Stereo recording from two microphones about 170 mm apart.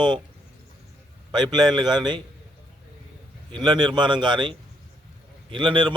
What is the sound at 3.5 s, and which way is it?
Speech, 25° right (ahead or behind).